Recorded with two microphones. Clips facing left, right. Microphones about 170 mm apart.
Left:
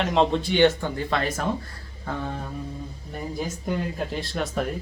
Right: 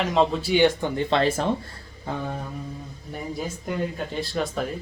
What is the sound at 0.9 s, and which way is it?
Speech, 30° right (ahead or behind).